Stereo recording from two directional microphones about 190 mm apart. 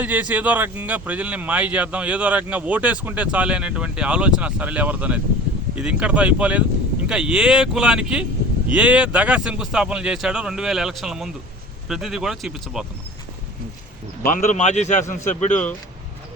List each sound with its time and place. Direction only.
0.0 s speech: 10° right (ahead or behind)
14.2 s speech: 45° left (ahead or behind)